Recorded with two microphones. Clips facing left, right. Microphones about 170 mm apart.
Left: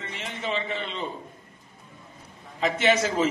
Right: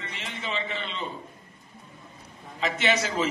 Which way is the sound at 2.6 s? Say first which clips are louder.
Left 3 dB; 50° left (ahead or behind).